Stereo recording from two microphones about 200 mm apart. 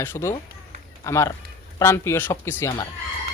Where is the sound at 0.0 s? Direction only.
10° left (ahead or behind).